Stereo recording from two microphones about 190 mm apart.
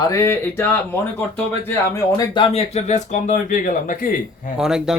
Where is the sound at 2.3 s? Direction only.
35° left (ahead or behind).